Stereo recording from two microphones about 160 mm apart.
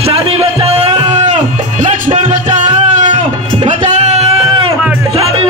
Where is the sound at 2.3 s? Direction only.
50° right (ahead or behind).